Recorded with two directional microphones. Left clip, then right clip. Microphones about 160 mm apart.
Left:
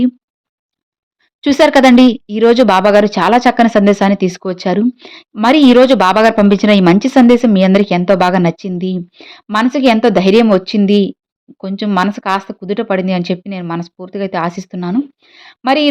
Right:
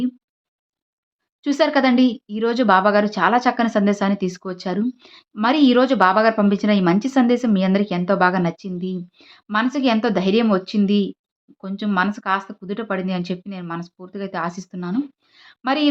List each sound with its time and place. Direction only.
1.4 s speech: 60° left (ahead or behind)